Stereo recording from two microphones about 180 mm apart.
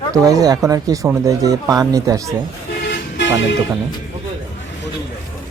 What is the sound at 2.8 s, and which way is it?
Toot, 75° left (ahead or behind).